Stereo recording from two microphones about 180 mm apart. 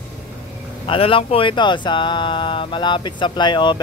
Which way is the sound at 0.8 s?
30° left (ahead or behind).